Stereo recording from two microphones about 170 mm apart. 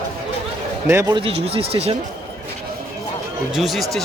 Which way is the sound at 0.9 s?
15° right (ahead or behind).